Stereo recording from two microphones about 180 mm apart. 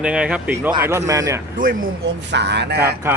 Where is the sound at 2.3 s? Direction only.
70° right (ahead or behind).